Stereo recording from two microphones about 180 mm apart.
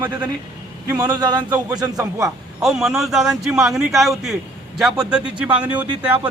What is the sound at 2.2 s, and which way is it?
A man's voice, 5° right (ahead or behind).